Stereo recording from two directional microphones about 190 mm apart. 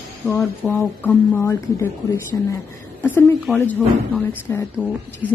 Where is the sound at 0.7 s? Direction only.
10° left (ahead or behind).